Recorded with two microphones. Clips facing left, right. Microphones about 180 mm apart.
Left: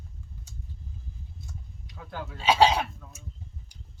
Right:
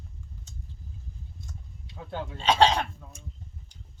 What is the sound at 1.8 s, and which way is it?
Speech, 25° right (ahead or behind).